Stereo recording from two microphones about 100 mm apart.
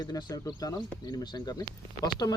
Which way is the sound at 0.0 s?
45° left (ahead or behind).